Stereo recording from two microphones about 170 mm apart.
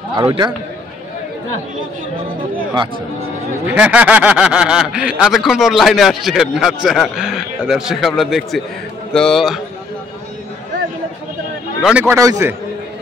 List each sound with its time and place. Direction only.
0.1 s a man's voice: 30° right (ahead or behind)
2.5 s speech: 25° right (ahead or behind)
3.6 s speech: 10° right (ahead or behind)
11.8 s speech: 10° right (ahead or behind)